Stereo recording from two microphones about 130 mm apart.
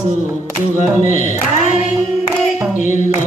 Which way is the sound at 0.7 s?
65° left (ahead or behind).